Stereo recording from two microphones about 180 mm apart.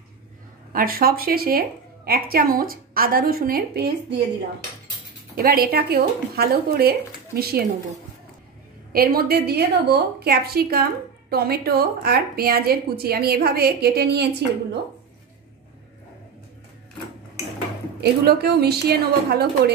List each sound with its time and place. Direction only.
0.7 s a woman's voice: 55° right (ahead or behind)
5.3 s a woman's voice: 55° right (ahead or behind)
8.9 s a woman's voice: 55° right (ahead or behind)
18.0 s a woman's voice: 65° right (ahead or behind)